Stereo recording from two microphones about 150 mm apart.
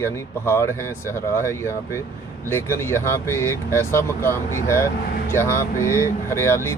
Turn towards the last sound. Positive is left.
turn(degrees=20)  # may be behind; listen again after turning